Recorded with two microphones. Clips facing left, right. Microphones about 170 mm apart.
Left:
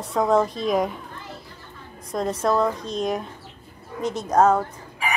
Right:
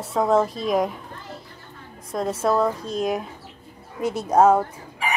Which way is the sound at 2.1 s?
5° right (ahead or behind).